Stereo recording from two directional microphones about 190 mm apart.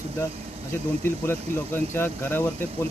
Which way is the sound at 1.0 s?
10° left (ahead or behind).